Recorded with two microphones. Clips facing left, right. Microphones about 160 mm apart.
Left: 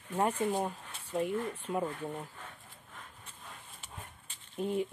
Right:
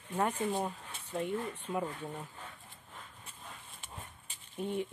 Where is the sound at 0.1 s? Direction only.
10° left (ahead or behind).